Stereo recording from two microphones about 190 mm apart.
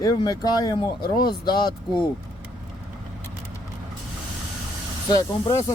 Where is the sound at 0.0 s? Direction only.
20° left (ahead or behind).